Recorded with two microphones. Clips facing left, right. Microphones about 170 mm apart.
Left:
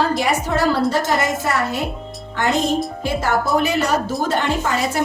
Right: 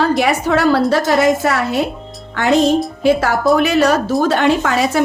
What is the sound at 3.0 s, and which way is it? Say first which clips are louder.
A woman's voice: right 7 dB; 80° right.